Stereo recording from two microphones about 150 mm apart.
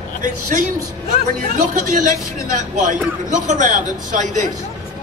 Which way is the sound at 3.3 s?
55° right (ahead or behind).